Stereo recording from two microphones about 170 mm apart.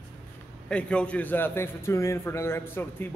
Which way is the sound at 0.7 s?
5° left (ahead or behind).